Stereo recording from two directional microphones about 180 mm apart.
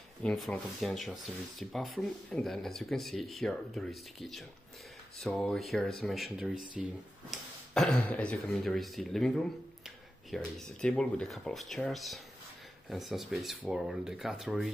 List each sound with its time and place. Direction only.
0.2 s speech: 5° left (ahead or behind)
6.5 s speech: 50° right (ahead or behind)
7.2 s speech: centre (ahead or behind)